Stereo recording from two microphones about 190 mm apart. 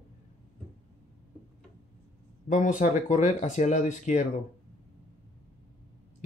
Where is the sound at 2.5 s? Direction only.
40° left (ahead or behind).